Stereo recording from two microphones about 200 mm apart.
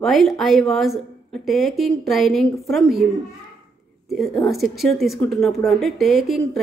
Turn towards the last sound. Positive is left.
turn(degrees=0)  # may be behind; listen again after turning